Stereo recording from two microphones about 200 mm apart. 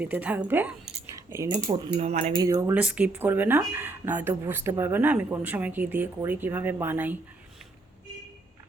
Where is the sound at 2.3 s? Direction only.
15° right (ahead or behind).